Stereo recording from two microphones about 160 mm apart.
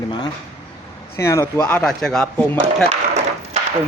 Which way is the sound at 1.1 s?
15° left (ahead or behind).